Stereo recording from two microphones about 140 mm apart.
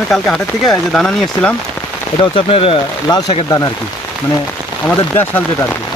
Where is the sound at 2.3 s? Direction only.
40° left (ahead or behind).